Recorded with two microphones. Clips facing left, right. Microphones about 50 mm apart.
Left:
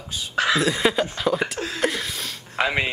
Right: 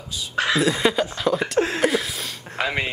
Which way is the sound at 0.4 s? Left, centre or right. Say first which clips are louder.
Even; centre.